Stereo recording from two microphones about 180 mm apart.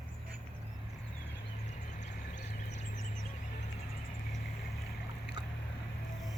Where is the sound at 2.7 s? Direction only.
40° left (ahead or behind).